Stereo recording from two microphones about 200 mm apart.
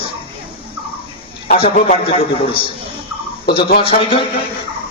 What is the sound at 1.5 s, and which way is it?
A man's voice, 30° left (ahead or behind).